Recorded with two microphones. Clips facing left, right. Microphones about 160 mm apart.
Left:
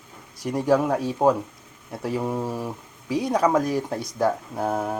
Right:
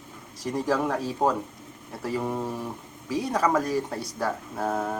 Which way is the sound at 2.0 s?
10° left (ahead or behind).